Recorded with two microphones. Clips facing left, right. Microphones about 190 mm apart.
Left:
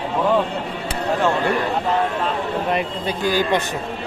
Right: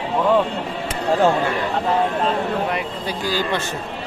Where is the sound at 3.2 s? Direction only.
15° left (ahead or behind).